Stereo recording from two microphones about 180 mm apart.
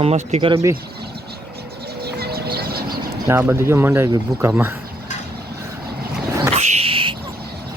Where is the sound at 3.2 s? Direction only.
10° right (ahead or behind).